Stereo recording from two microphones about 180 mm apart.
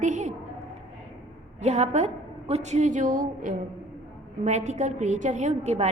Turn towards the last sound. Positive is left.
turn(degrees=-40)  # may be behind; listen again after turning